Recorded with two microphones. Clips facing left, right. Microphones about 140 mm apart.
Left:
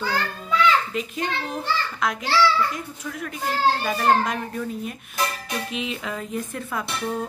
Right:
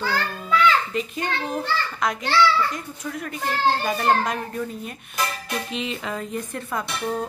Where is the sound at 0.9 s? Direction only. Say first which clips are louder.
Right 1 dB; centre (ahead or behind).